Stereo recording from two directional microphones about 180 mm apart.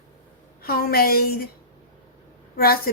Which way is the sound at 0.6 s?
55° left (ahead or behind).